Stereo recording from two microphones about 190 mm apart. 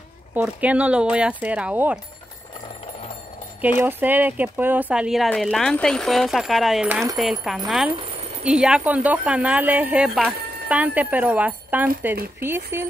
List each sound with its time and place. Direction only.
0.3 s speech: 10° right (ahead or behind)
3.6 s speech: 10° right (ahead or behind)
7.9 s a sound: 35° right (ahead or behind)
8.5 s speech: 5° right (ahead or behind)